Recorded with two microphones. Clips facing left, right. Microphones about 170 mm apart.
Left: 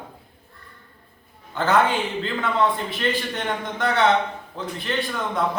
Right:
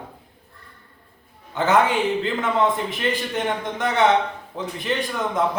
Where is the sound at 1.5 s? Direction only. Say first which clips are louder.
Right 1 dB; 20° right (ahead or behind).